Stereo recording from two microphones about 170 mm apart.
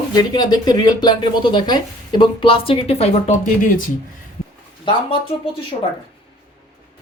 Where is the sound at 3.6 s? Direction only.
55° left (ahead or behind).